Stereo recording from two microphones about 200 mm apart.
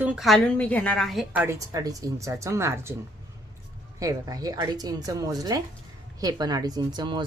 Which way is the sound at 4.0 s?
15° right (ahead or behind).